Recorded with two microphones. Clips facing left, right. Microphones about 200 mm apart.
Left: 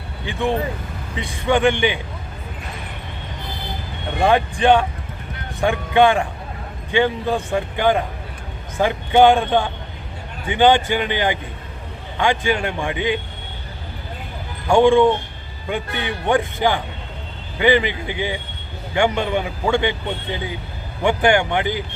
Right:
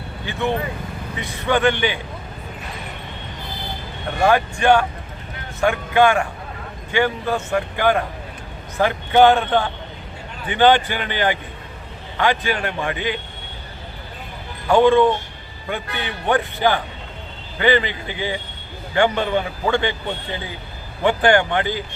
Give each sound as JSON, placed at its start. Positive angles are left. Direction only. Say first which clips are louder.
{"t": 0.3, "sound": "a man's voice", "louder": "left 2 dB", "side_deg": 15}
{"t": 4.2, "sound": "speech", "louder": "even", "side_deg": 20}
{"t": 5.5, "sound": "a man's voice", "louder": "left 1 dB", "side_deg": 15}
{"t": 14.7, "sound": "a man's voice", "louder": "left 1 dB", "side_deg": 15}